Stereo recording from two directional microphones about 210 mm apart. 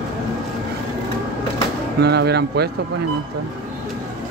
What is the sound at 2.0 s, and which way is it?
Speech, 50° right (ahead or behind).